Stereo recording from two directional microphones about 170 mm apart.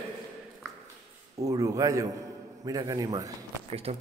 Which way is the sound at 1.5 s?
20° right (ahead or behind).